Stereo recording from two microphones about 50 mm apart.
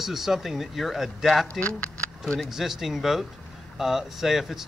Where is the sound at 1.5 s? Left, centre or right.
Left.